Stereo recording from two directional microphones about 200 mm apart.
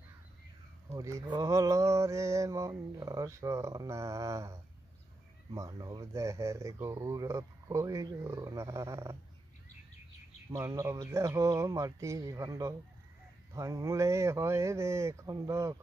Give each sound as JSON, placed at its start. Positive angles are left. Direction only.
{"t": 0.9, "sound": "mantra", "side_deg": -15}
{"t": 10.5, "sound": "mantra", "side_deg": -15}